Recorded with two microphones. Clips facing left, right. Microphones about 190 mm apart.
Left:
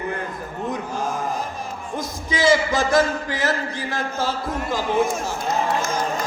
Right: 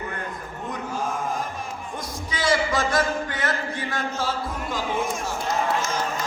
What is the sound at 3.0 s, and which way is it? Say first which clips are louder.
Music: left 3 dB; centre (ahead or behind).